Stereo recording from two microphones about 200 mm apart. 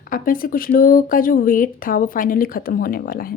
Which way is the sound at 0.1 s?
45° left (ahead or behind).